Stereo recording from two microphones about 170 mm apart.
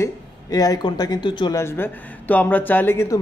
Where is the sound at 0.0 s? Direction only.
20° left (ahead or behind).